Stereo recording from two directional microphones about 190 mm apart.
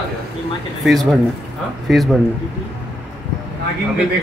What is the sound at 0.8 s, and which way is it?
Speech, centre (ahead or behind).